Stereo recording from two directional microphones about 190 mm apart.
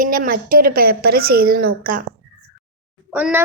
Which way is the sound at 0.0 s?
45° right (ahead or behind).